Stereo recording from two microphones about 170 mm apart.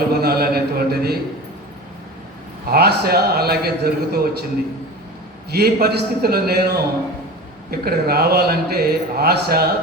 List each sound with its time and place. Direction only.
0.1 s a sound: 65° right (ahead or behind)
2.6 s a man's voice: 65° right (ahead or behind)
5.5 s a man's voice: 65° right (ahead or behind)